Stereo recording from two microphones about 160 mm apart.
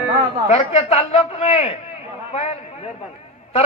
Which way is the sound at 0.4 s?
40° left (ahead or behind).